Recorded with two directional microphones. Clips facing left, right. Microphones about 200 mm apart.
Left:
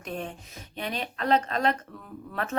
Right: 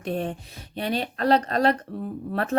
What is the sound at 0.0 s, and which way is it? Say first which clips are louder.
Speech: right 7 dB; 35° right (ahead or behind).